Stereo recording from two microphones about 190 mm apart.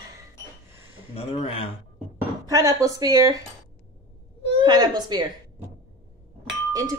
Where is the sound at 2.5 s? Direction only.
15° right (ahead or behind).